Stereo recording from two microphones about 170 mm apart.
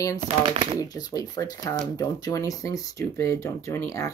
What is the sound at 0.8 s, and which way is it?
Speech, 20° left (ahead or behind).